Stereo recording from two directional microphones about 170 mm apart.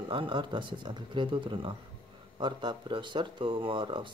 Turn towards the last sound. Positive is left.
turn(degrees=-30)  # may be behind; listen again after turning